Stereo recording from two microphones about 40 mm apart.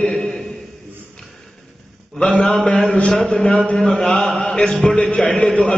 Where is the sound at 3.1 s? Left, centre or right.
Centre.